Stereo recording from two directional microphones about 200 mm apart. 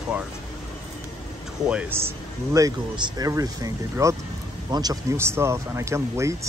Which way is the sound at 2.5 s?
20° right (ahead or behind).